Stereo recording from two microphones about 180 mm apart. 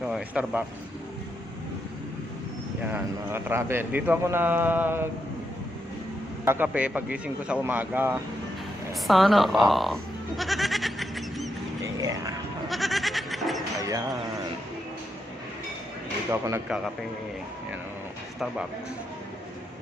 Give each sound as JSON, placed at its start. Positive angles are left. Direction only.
{"t": 0.0, "sound": "speech", "side_deg": -5}
{"t": 2.8, "sound": "a man's voice", "side_deg": -10}
{"t": 6.4, "sound": "a man's voice", "side_deg": -10}
{"t": 8.9, "sound": "bleat", "side_deg": 0}
{"t": 11.9, "sound": "a sound", "side_deg": -20}
{"t": 12.6, "sound": "goat", "side_deg": 0}
{"t": 13.7, "sound": "bird", "side_deg": -20}
{"t": 16.6, "sound": "a man's voice", "side_deg": -5}